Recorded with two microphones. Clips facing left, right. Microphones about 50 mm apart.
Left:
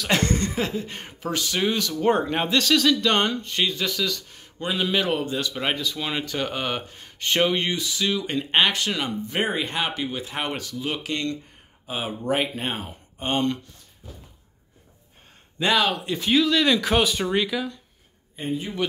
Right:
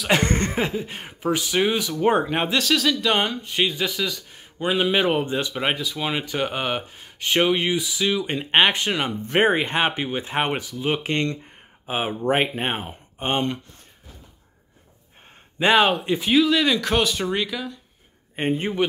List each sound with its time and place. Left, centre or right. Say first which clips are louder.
0.2 s speech: right 2 dB; right
0.7 s speech: right 2 dB; centre
9.2 s speech: right 10 dB; right
10.6 s speech: right 4 dB; centre
15.6 s speech: right 4 dB; right
16.2 s speech: even; centre
18.3 s speech: right 5 dB; right